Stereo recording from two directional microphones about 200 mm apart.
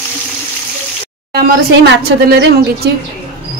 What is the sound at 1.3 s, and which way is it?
Speech, 45° right (ahead or behind).